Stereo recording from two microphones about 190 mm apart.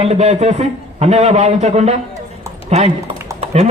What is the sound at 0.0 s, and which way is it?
A man's voice, 35° right (ahead or behind).